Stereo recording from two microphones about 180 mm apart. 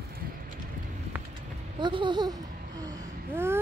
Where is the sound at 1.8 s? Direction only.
25° right (ahead or behind).